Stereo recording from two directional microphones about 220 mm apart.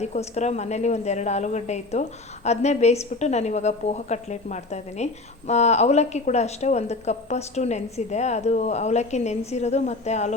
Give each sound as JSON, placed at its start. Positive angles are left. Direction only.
{"t": 0.0, "sound": "a woman's voice", "side_deg": 30}